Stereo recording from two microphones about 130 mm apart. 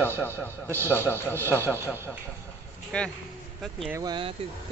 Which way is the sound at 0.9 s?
15° left (ahead or behind).